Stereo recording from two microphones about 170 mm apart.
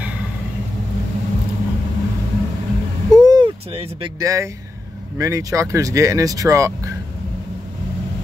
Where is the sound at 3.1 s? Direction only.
25° right (ahead or behind).